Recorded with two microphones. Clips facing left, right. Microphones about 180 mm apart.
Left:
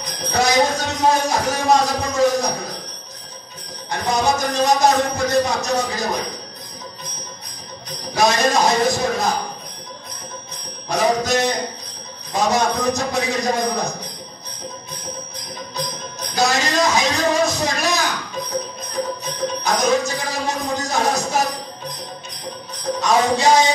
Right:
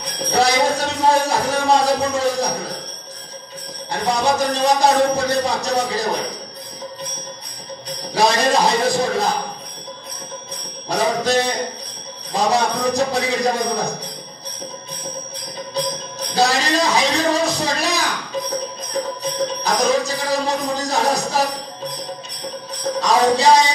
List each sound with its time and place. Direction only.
0.0 s speech: 30° right (ahead or behind)
1.3 s music: 30° right (ahead or behind)
3.9 s music: 35° right (ahead or behind)
8.1 s music: 30° right (ahead or behind)
10.9 s jingle bell: 30° right (ahead or behind)
12.3 s music: 30° right (ahead or behind)
16.3 s music: 30° right (ahead or behind)
22.9 s music: 35° right (ahead or behind)